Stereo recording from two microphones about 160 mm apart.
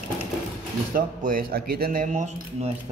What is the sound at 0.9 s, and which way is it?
Speech, 60° right (ahead or behind).